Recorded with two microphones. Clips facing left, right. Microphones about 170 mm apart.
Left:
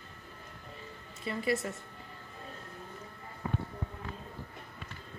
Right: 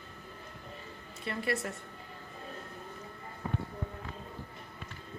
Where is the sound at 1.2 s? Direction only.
Centre (ahead or behind).